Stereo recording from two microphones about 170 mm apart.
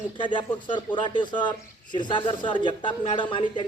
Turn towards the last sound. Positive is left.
turn(degrees=30)  # may be behind; listen again after turning